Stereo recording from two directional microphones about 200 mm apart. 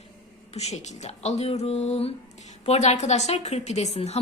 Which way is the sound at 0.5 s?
35° left (ahead or behind).